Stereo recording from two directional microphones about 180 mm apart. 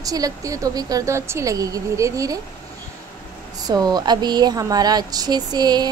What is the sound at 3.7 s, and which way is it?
Speech, 20° right (ahead or behind).